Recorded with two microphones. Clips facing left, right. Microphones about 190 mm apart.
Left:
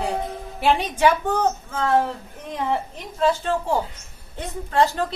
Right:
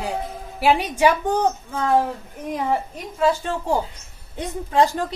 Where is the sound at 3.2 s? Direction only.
10° right (ahead or behind).